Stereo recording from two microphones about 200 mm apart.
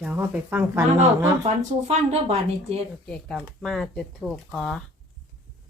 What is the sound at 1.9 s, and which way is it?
Speech, 30° right (ahead or behind).